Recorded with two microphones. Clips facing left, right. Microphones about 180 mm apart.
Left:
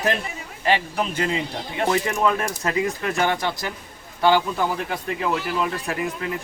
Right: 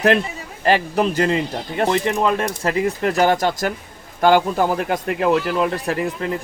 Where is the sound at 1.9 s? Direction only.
30° right (ahead or behind); by 5.7 s 55° right (ahead or behind).